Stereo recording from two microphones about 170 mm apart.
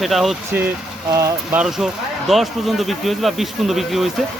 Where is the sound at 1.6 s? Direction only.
Centre (ahead or behind).